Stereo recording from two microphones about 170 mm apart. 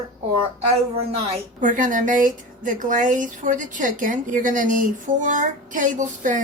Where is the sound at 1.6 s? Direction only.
50° right (ahead or behind).